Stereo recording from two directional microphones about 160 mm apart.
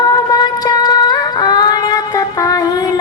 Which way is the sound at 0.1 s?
25° left (ahead or behind).